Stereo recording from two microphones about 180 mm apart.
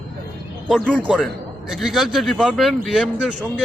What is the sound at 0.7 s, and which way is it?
A man's voice, 5° left (ahead or behind).